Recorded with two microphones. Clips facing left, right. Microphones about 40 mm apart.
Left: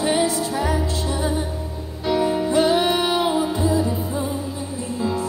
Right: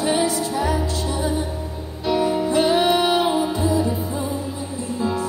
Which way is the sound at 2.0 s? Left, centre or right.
Centre.